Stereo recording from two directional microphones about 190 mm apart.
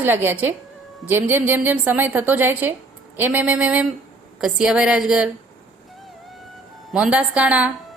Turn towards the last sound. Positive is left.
turn(degrees=-5)  # may be behind; listen again after turning